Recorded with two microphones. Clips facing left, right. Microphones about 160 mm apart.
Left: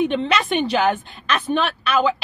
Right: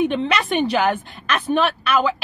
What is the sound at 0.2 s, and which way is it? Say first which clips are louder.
Speech: even; 10° right (ahead or behind).